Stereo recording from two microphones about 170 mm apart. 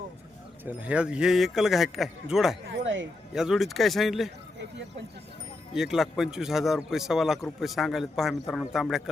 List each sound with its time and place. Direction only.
0.6 s speech: 10° right (ahead or behind)
2.8 s speech: 90° right
3.3 s speech: centre (ahead or behind)
5.7 s speech: centre (ahead or behind)